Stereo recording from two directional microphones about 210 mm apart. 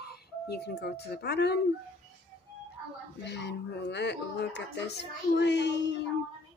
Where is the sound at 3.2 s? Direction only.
55° left (ahead or behind).